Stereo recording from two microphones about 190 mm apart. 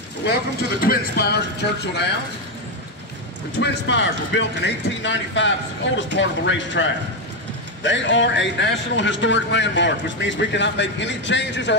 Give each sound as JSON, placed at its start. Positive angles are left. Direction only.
{"t": 0.2, "sound": "speech", "side_deg": 55}
{"t": 3.5, "sound": "a man's voice", "side_deg": 65}